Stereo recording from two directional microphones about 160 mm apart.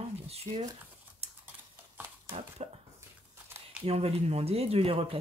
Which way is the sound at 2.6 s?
45° right (ahead or behind).